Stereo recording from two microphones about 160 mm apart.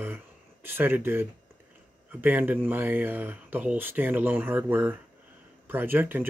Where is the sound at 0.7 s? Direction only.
15° right (ahead or behind).